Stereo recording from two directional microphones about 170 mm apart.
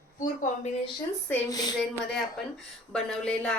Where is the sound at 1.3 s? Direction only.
20° left (ahead or behind).